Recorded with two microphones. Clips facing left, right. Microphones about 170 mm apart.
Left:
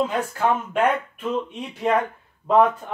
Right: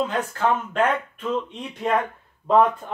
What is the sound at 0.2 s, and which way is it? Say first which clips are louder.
Speech: left 1 dB; 10° left (ahead or behind).